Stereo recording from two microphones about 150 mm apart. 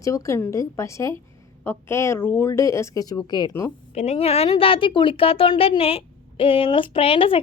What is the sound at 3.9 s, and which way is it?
A woman's voice, 45° left (ahead or behind).